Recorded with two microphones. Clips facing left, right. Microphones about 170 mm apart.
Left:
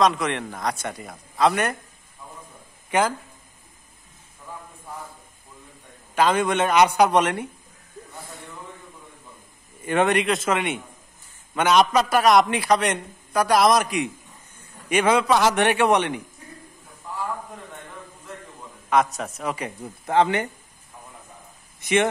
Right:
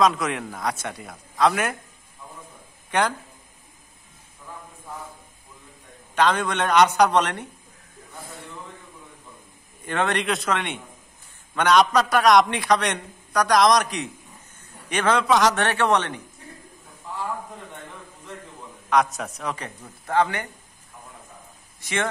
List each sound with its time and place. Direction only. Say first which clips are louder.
0.0 s a man's voice: even; centre (ahead or behind)
2.9 s speech: left 1 dB; 5° left (ahead or behind)
6.1 s a man's voice: left 2 dB; 10° left (ahead or behind)
9.8 s a man's voice: left 4 dB; 10° left (ahead or behind)
18.9 s a man's voice: even; centre (ahead or behind)
20.2 s speech: left 3 dB; 20° left (ahead or behind)
21.8 s speech: left 6 dB; 20° left (ahead or behind)